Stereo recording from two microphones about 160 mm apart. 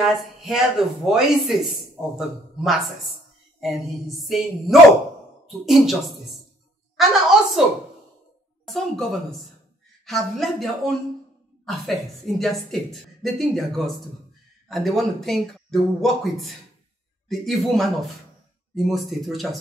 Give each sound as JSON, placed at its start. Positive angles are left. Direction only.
{"t": 0.0, "sound": "a woman's voice", "side_deg": 0}
{"t": 8.6, "sound": "a woman's voice", "side_deg": 0}